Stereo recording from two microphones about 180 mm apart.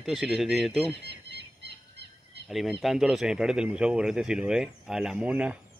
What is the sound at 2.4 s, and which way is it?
Speech, centre (ahead or behind).